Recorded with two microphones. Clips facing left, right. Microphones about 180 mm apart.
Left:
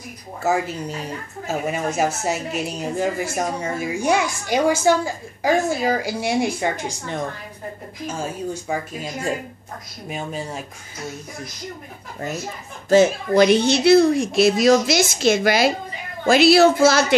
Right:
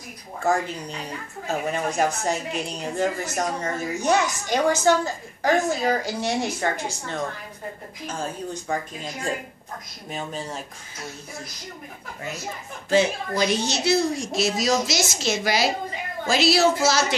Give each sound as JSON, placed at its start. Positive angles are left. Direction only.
{"t": 0.4, "sound": "a woman's voice", "side_deg": 5}
{"t": 13.3, "sound": "a woman's voice", "side_deg": 60}